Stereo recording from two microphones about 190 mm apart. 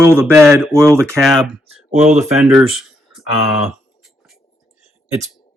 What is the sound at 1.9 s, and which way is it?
Speech, 35° right (ahead or behind).